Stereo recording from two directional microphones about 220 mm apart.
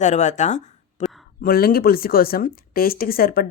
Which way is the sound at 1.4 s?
40° left (ahead or behind).